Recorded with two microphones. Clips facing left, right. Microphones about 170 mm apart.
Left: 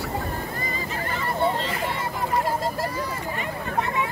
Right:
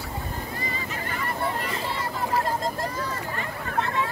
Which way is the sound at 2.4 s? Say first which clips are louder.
Left 2 dB; 5° left (ahead or behind).